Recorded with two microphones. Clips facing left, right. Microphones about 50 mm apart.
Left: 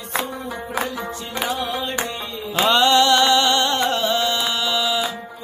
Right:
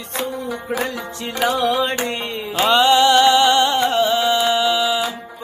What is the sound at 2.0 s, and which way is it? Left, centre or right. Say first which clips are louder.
Music: right 5 dB; right.